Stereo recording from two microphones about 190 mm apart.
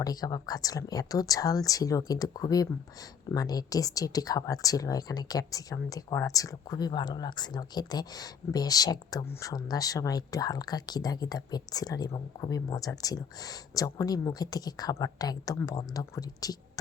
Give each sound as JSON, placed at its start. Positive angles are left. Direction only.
{"t": 0.0, "sound": "speech", "side_deg": 20}